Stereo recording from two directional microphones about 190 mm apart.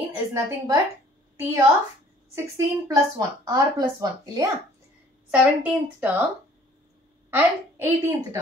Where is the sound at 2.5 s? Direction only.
20° right (ahead or behind).